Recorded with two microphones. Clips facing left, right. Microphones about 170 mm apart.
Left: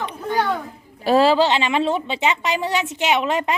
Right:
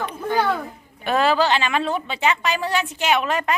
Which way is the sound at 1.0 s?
30° left (ahead or behind).